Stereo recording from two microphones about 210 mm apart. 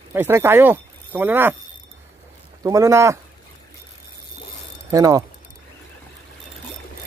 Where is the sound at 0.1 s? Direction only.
10° right (ahead or behind).